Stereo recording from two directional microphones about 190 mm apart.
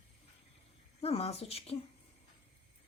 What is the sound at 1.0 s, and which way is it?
Speech, 30° left (ahead or behind).